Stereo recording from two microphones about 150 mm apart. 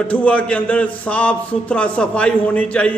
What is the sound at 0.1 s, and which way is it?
A man's voice, 10° left (ahead or behind).